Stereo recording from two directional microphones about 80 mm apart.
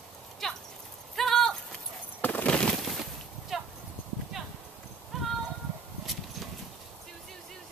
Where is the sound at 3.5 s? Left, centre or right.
Centre.